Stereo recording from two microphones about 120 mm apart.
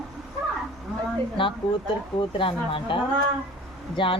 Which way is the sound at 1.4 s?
45° left (ahead or behind).